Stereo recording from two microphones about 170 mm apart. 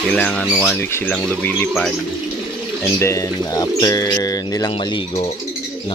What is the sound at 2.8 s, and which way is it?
Speech, 15° left (ahead or behind).